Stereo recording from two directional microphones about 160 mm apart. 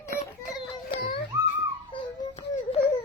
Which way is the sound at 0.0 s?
45° left (ahead or behind).